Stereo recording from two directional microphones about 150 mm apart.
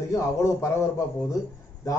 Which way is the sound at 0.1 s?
20° left (ahead or behind).